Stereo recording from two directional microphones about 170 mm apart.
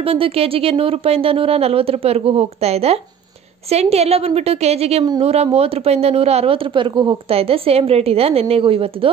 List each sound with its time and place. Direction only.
0.0 s speech: 35° right (ahead or behind)